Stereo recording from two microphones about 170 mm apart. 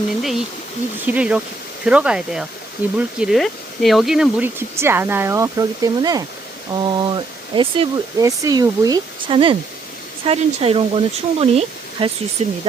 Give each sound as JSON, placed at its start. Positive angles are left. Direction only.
{"t": 0.2, "sound": "a sound", "side_deg": 0}
{"t": 1.0, "sound": "speech", "side_deg": -10}
{"t": 8.2, "sound": "speech", "side_deg": -20}